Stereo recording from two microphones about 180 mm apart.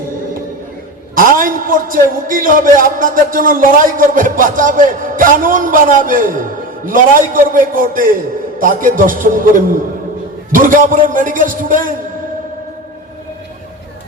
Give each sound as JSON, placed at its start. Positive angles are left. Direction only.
{"t": 1.1, "sound": "a man's voice", "side_deg": -50}